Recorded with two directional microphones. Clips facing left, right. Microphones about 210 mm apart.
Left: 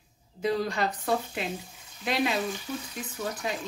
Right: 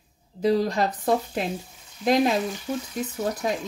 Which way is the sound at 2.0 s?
40° right (ahead or behind).